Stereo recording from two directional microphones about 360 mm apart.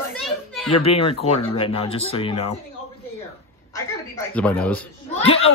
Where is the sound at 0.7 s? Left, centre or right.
Centre.